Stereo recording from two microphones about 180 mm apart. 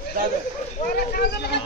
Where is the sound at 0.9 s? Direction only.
55° left (ahead or behind).